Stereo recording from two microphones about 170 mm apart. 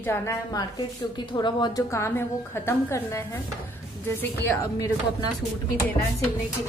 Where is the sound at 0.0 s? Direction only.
15° left (ahead or behind).